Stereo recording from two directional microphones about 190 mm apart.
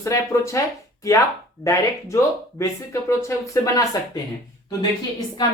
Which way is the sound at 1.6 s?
15° left (ahead or behind).